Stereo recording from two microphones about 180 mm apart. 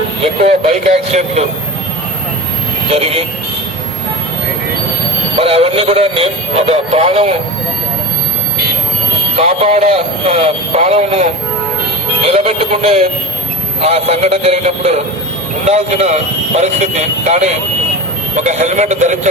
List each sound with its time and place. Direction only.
0.2 s speech: 35° right (ahead or behind)
2.9 s speech: 35° right (ahead or behind)
5.4 s speech: 30° right (ahead or behind)
9.4 s speech: 35° right (ahead or behind)